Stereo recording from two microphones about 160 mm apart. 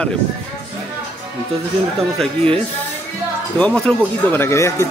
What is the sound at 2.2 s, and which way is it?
Speech, 5° left (ahead or behind).